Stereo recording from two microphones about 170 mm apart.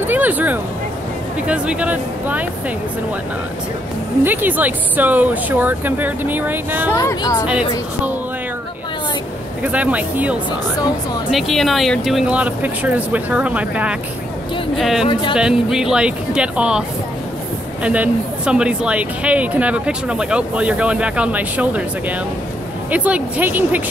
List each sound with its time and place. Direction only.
0.0 s a sound: 10° right (ahead or behind)
1.5 s speech: 5° right (ahead or behind)
4.2 s speech: 10° right (ahead or behind)
6.9 s speech: 20° left (ahead or behind)
9.6 s speech: 10° right (ahead or behind)
17.8 s speech: 10° right (ahead or behind)
22.8 s speech: 10° right (ahead or behind)